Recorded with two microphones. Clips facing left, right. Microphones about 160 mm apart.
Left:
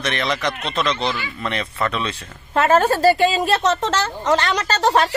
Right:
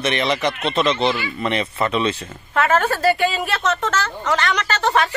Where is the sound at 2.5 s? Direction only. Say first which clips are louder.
Left 3 dB; 35° left (ahead or behind).